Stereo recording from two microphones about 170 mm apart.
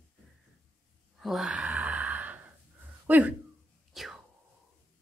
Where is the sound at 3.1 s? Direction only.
10° right (ahead or behind).